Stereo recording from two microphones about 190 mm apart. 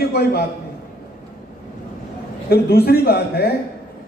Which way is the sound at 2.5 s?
55° left (ahead or behind).